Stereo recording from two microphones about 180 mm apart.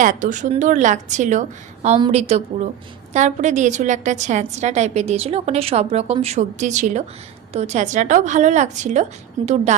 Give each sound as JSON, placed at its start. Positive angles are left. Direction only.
{"t": 0.0, "sound": "a woman's voice", "side_deg": -45}
{"t": 9.4, "sound": "a woman's voice", "side_deg": -30}